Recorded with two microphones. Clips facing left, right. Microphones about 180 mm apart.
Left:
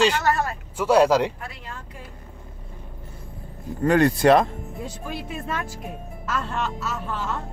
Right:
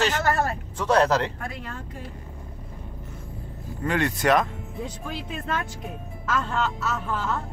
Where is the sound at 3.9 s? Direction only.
35° left (ahead or behind).